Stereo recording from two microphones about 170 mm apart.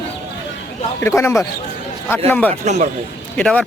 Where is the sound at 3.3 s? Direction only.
5° left (ahead or behind).